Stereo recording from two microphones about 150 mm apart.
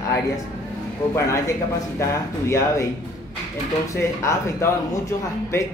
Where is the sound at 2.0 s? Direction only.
20° left (ahead or behind).